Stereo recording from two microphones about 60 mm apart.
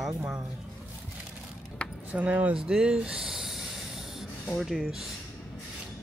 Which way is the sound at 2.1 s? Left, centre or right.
Right.